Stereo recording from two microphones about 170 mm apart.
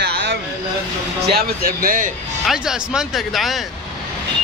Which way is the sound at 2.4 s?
Centre (ahead or behind).